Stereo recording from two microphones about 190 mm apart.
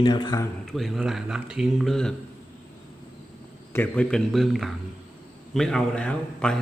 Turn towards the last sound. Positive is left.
turn(degrees=5)  # may be behind; listen again after turning